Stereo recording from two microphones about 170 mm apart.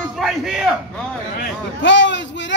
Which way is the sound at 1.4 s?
90° left.